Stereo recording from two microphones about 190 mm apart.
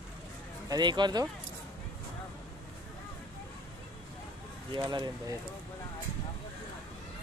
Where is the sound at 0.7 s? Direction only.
25° right (ahead or behind).